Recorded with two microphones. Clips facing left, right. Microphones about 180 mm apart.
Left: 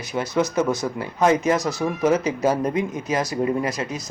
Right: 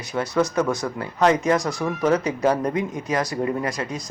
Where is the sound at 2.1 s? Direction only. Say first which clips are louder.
Even; 20° left (ahead or behind).